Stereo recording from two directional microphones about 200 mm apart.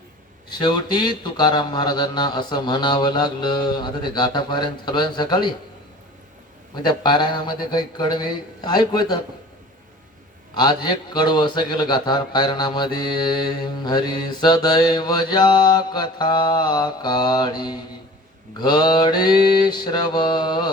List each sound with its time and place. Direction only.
0.6 s a man's voice: 20° left (ahead or behind)
6.8 s a man's voice: 20° left (ahead or behind)
10.5 s a man's voice: 20° left (ahead or behind)